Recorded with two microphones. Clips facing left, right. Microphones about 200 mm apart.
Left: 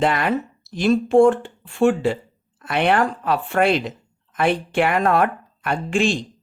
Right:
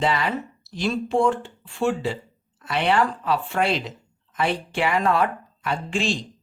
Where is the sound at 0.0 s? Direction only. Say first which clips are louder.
Left 4 dB; 55° left (ahead or behind).